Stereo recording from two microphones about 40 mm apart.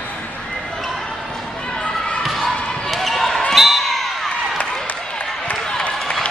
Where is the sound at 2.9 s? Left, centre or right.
Centre.